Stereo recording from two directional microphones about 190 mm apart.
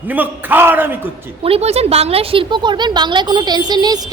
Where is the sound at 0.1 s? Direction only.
10° right (ahead or behind).